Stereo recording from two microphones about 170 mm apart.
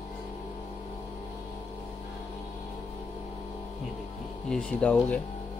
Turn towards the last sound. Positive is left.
turn(degrees=10)  # may be behind; listen again after turning